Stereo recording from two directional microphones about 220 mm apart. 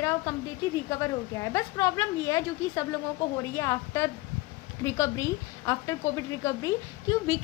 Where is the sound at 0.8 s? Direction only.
15° left (ahead or behind).